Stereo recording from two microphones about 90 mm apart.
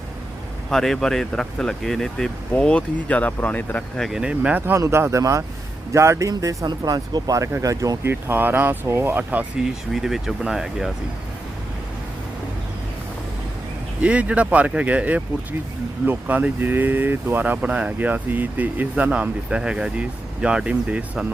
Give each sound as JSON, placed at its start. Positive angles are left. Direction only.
{"t": 0.7, "sound": "speech", "side_deg": 5}
{"t": 3.9, "sound": "speech", "side_deg": 0}
{"t": 4.2, "sound": "speech", "side_deg": -15}
{"t": 4.6, "sound": "speech", "side_deg": -30}
{"t": 6.7, "sound": "speech", "side_deg": -50}
{"t": 8.1, "sound": "speech", "side_deg": -20}
{"t": 9.9, "sound": "speech", "side_deg": -5}
{"t": 14.0, "sound": "speech", "side_deg": -15}